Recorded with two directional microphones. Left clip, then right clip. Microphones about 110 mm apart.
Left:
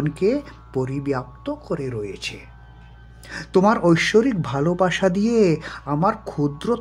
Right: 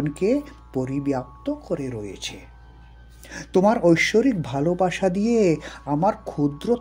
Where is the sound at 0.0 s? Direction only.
40° right (ahead or behind); by 2.4 s 65° right (ahead or behind).